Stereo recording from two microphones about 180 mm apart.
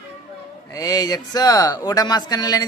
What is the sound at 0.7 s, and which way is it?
Speech, 20° left (ahead or behind).